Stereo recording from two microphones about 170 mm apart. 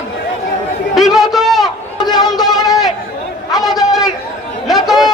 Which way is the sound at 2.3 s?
Centre (ahead or behind).